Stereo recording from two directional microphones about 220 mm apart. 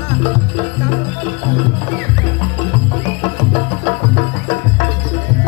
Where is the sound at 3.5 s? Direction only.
30° left (ahead or behind).